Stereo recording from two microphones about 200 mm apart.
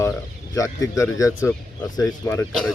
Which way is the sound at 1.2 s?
15° left (ahead or behind).